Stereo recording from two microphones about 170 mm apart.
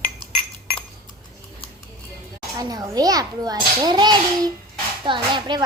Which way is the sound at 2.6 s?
20° right (ahead or behind).